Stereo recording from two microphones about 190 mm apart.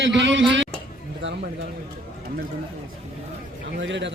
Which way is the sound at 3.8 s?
70° right (ahead or behind).